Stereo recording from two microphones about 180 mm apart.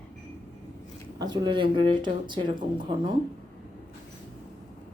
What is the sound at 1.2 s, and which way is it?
Speech, 25° right (ahead or behind).